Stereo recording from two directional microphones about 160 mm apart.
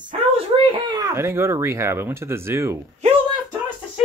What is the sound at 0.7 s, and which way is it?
Speech, 25° right (ahead or behind).